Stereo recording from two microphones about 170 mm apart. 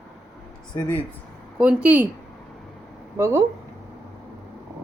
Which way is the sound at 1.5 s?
5° right (ahead or behind).